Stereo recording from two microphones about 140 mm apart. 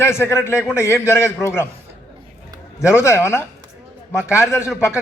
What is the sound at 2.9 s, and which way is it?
A man's voice, 20° left (ahead or behind).